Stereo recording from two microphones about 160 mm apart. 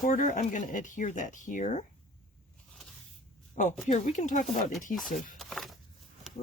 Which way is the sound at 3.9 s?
50° left (ahead or behind).